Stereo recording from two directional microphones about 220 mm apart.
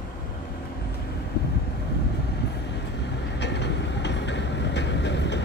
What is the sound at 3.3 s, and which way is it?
Train, 50° left (ahead or behind).